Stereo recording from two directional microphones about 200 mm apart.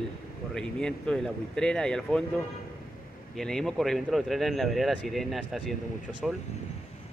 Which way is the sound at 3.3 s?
Centre (ahead or behind).